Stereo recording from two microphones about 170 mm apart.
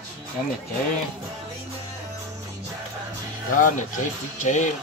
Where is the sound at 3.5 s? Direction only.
50° left (ahead or behind).